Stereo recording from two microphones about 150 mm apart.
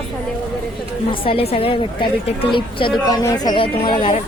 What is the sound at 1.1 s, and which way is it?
A woman's voice, 40° left (ahead or behind).